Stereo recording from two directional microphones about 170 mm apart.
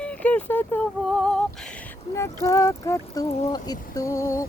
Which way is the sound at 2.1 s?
20° left (ahead or behind).